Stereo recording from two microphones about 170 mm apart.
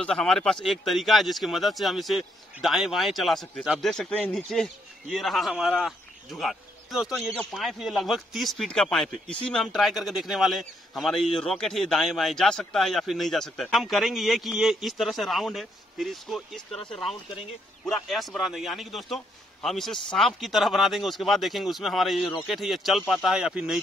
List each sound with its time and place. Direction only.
0.0 s speech: 5° left (ahead or behind)